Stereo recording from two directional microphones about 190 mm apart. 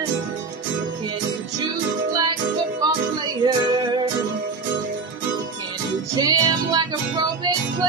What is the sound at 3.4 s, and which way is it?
Music, 25° right (ahead or behind).